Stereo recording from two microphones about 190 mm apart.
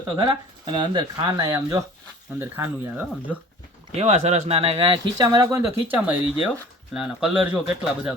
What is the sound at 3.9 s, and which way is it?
Speech, 35° right (ahead or behind).